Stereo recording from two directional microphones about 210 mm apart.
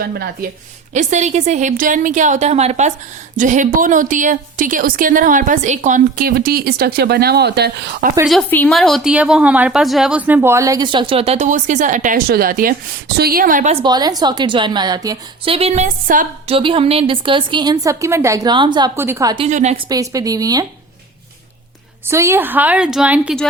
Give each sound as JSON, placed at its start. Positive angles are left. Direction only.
{"t": 0.0, "sound": "a woman's voice", "side_deg": -50}
{"t": 0.9, "sound": "a woman's voice", "side_deg": -35}
{"t": 8.3, "sound": "a woman's voice", "side_deg": 5}
{"t": 13.8, "sound": "a woman's voice", "side_deg": -20}
{"t": 15.5, "sound": "a woman's voice", "side_deg": -30}
{"t": 16.6, "sound": "a woman's voice", "side_deg": -25}
{"t": 18.9, "sound": "a woman's voice", "side_deg": -10}
{"t": 19.5, "sound": "a woman's voice", "side_deg": -35}
{"t": 19.9, "sound": "a woman's voice", "side_deg": -15}
{"t": 22.0, "sound": "a woman's voice", "side_deg": -15}